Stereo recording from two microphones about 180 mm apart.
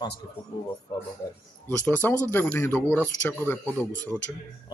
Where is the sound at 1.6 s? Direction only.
10° left (ahead or behind).